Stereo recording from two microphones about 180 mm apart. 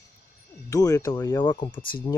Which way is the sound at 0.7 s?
20° left (ahead or behind).